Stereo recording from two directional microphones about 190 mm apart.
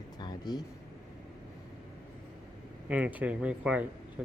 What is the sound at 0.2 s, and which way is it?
Vehicle, 20° left (ahead or behind).